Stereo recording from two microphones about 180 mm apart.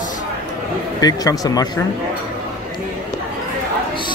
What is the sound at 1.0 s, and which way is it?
Speech, 20° left (ahead or behind).